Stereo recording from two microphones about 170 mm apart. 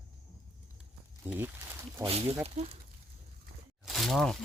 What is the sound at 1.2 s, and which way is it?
Speech, 10° right (ahead or behind).